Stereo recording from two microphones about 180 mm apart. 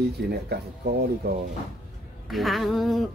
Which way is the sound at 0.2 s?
70° right (ahead or behind).